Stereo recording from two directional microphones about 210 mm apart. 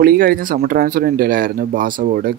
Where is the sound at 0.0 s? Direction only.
45° right (ahead or behind).